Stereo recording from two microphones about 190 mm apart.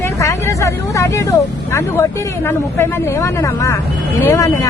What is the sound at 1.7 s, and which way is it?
Speech, 15° left (ahead or behind).